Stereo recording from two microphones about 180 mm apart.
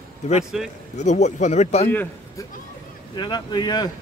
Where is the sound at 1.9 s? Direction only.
10° left (ahead or behind).